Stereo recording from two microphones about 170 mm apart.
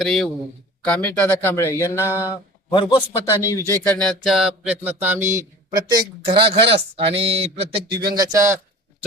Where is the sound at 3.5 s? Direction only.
15° left (ahead or behind); by 8.6 s 20° right (ahead or behind).